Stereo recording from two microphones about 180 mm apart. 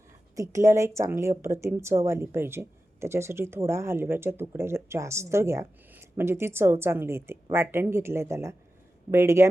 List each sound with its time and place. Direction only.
0.3 s a woman's voice: 15° right (ahead or behind)